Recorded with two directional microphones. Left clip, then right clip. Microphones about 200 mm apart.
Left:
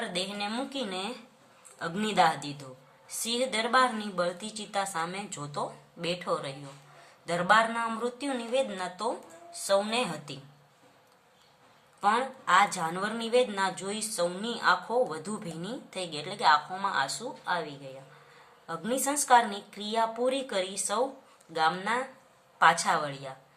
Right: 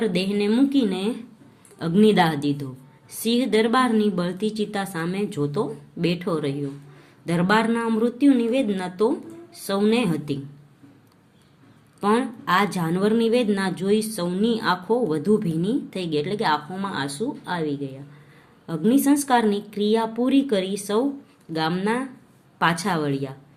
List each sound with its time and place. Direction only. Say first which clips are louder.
0.0 s a woman's voice: right 9 dB; 15° right (ahead or behind)
11.9 s a woman's voice: right 4 dB; 20° right (ahead or behind)